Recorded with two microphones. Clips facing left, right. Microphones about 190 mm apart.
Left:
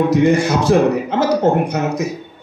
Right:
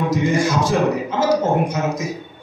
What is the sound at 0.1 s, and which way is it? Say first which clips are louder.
A man's voice: left 5 dB; 65° left (ahead or behind).